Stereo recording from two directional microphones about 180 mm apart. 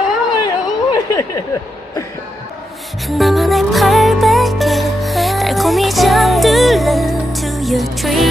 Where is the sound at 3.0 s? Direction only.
Centre (ahead or behind).